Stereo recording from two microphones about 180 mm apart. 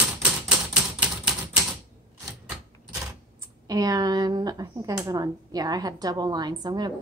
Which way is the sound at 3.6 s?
20° right (ahead or behind).